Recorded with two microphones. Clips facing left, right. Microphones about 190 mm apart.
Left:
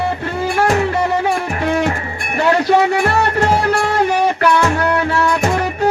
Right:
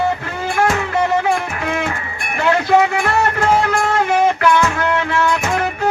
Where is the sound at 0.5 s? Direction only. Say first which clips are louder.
Left 1 dB; 35° left (ahead or behind).